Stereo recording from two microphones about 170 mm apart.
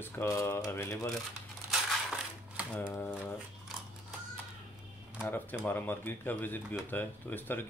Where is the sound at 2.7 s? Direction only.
15° left (ahead or behind).